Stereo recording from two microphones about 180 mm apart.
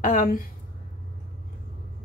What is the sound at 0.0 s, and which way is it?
Speech, 50° left (ahead or behind).